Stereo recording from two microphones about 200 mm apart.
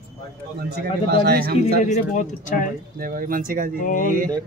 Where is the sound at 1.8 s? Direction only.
40° left (ahead or behind).